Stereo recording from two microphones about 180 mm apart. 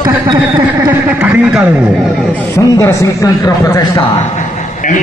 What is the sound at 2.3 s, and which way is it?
A man's voice, 15° left (ahead or behind).